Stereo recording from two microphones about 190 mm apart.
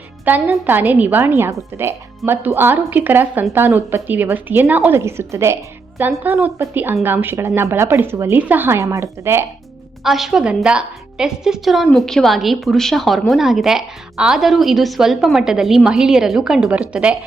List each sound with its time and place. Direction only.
0.3 s a woman's voice: 10° right (ahead or behind)
10.0 s a woman's voice: centre (ahead or behind)